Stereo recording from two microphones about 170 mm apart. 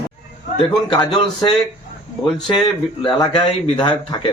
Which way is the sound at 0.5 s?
25° left (ahead or behind).